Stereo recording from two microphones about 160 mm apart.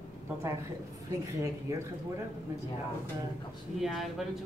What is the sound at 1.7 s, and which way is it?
Speech, 20° right (ahead or behind).